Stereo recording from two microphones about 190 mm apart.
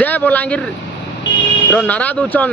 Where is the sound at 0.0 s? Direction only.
10° left (ahead or behind).